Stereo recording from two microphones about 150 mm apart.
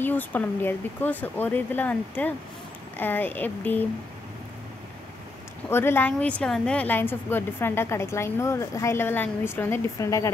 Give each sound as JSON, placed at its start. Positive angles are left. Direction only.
{"t": 0.0, "sound": "a woman's voice", "side_deg": 10}
{"t": 5.7, "sound": "a woman's voice", "side_deg": 15}